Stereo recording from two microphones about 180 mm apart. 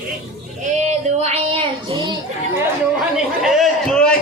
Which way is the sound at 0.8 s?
40° right (ahead or behind).